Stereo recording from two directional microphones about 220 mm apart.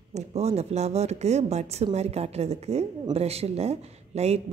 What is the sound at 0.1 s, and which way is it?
Speech, 30° right (ahead or behind).